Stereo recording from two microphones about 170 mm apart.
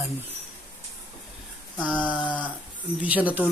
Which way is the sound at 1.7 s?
5° left (ahead or behind).